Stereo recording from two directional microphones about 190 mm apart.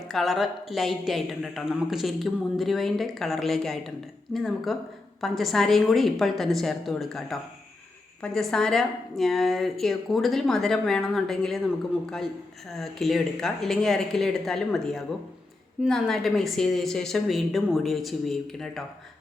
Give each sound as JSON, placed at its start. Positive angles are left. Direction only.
{"t": 0.1, "sound": "a woman's voice", "side_deg": 0}
{"t": 12.7, "sound": "a woman's voice", "side_deg": 0}